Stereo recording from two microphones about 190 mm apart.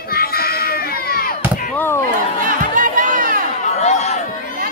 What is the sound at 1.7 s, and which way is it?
Chop, 10° left (ahead or behind).